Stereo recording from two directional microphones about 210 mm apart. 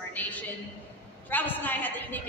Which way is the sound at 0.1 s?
5° left (ahead or behind).